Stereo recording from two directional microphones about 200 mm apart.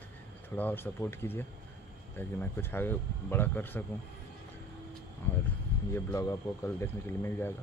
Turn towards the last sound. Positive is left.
turn(degrees=10)  # may be behind; listen again after turning